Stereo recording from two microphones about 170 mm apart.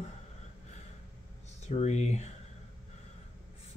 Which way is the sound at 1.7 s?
40° left (ahead or behind).